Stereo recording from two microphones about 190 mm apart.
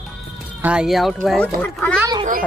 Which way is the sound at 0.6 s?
5° right (ahead or behind).